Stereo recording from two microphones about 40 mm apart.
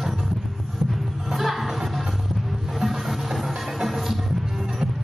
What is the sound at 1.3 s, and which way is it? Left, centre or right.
Music, centre.